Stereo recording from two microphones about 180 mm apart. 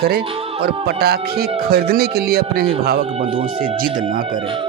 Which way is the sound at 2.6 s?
30° right (ahead or behind).